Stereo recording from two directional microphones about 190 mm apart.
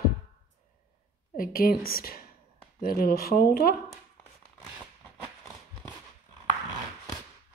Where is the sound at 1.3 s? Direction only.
50° left (ahead or behind).